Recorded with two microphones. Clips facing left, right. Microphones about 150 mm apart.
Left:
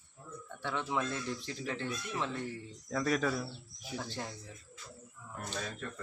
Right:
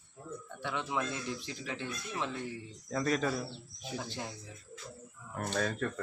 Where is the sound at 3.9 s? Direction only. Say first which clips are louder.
Even; 15° right (ahead or behind).